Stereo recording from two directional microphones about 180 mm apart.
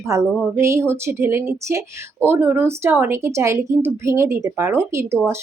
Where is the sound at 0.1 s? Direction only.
15° right (ahead or behind).